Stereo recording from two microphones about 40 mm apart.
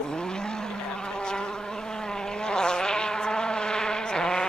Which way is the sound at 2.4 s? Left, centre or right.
Centre.